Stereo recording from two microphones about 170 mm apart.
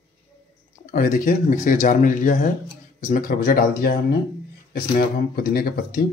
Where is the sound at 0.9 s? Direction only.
55° left (ahead or behind).